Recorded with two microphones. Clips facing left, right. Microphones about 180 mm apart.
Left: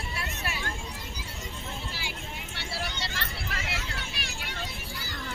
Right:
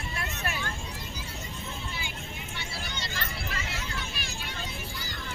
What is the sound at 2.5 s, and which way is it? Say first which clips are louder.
Vehicle: left 5 dB; 80° left.